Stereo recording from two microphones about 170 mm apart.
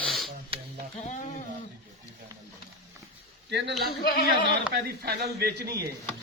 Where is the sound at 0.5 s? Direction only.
35° right (ahead or behind).